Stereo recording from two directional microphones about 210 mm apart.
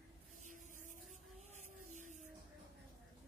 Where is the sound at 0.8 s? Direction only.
35° right (ahead or behind).